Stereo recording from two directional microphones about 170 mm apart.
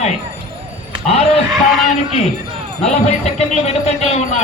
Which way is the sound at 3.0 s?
40° left (ahead or behind).